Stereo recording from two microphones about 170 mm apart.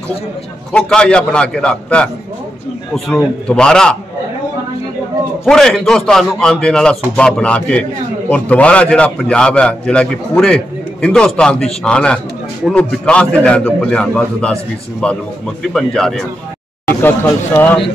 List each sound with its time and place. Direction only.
0.7 s a man's voice: 5° left (ahead or behind)
3.4 s a man's voice: 5° left (ahead or behind)
5.4 s a man's voice: 5° left (ahead or behind)